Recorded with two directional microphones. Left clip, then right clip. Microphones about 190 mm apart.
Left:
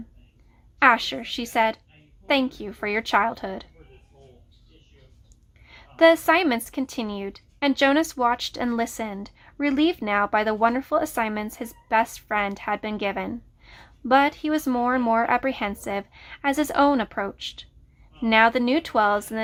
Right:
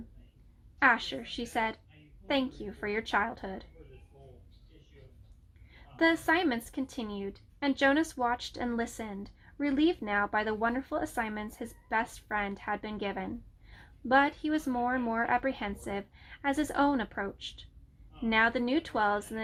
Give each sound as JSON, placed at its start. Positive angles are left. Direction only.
{"t": 0.8, "sound": "a woman's voice", "side_deg": 25}
{"t": 5.6, "sound": "a woman's voice", "side_deg": 25}